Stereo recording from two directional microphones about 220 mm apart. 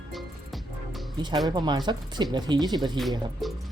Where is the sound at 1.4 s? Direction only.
20° right (ahead or behind).